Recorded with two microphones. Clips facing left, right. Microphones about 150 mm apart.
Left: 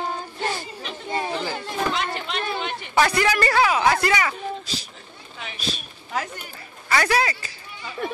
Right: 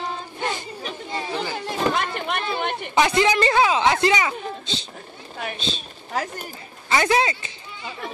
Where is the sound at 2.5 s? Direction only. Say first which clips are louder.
Right 3 dB; 55° right (ahead or behind).